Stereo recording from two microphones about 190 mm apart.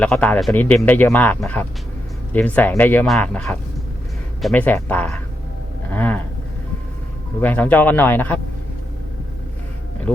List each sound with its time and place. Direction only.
0.0 s speech: 5° left (ahead or behind)
5.9 s a sound: 10° left (ahead or behind)
7.4 s speech: 10° left (ahead or behind)